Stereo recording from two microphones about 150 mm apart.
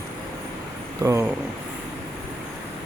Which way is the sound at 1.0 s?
20° right (ahead or behind).